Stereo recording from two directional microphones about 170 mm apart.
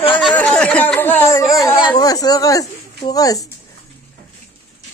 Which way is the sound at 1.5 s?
20° left (ahead or behind).